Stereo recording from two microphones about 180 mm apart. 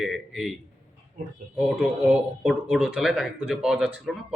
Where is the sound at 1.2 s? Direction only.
45° right (ahead or behind).